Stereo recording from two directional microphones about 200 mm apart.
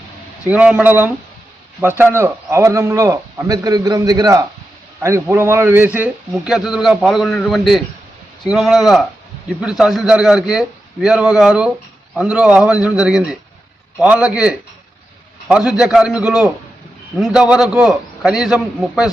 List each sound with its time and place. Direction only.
0.4 s a man's voice: 5° right (ahead or behind)